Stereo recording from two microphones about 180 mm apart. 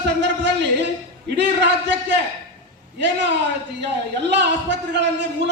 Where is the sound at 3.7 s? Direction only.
75° right (ahead or behind).